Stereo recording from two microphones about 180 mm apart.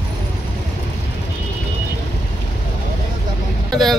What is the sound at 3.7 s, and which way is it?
Vehicle, centre (ahead or behind).